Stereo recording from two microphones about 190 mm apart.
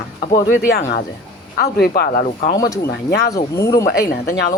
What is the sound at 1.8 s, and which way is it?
Speech, 55° left (ahead or behind).